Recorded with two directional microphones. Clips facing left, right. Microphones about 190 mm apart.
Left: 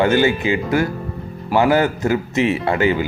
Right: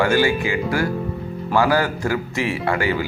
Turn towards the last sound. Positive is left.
turn(degrees=20)  # may be behind; listen again after turning